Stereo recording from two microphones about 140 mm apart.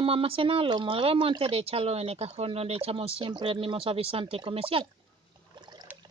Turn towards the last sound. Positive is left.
turn(degrees=-40)  # may be behind; listen again after turning